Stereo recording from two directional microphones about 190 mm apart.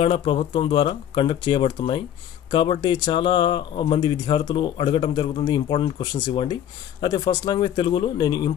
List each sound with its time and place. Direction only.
0.0 s speech: 30° left (ahead or behind)